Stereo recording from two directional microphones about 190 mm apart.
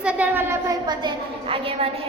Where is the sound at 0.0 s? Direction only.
5° right (ahead or behind).